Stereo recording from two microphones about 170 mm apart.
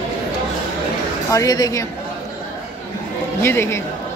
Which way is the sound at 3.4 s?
15° left (ahead or behind).